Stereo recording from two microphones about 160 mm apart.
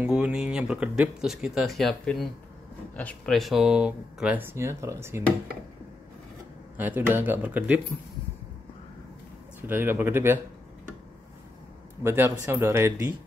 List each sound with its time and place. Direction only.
0.0 s speech: 5° right (ahead or behind)
6.8 s speech: 10° right (ahead or behind)
9.6 s speech: 15° right (ahead or behind)
12.0 s speech: 15° right (ahead or behind)